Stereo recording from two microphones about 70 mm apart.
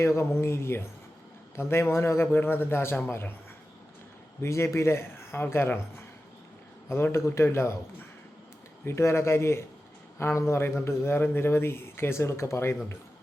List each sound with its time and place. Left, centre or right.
0.0 s speech: left
4.4 s speech: left
6.8 s speech: left
8.8 s speech: left